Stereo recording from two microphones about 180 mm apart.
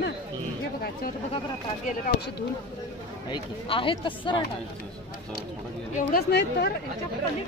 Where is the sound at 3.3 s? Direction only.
30° left (ahead or behind).